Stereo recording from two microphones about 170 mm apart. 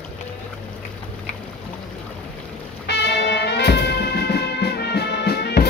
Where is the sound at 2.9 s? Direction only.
75° left (ahead or behind).